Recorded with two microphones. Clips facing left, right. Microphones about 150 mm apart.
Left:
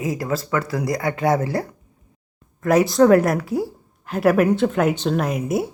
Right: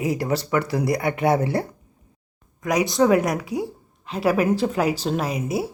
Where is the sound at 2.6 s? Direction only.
15° right (ahead or behind).